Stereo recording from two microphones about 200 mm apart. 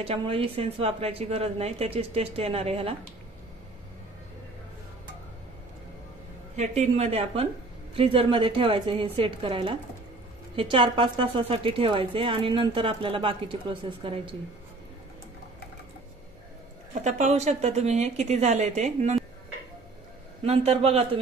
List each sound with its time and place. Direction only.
0.0 s a woman's voice: 30° right (ahead or behind)
6.5 s a woman's voice: 35° right (ahead or behind)
17.0 s speech: 35° right (ahead or behind)
20.4 s speech: 30° right (ahead or behind)